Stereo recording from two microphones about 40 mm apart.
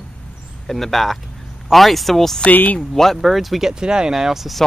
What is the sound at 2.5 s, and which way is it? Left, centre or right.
Speech, left.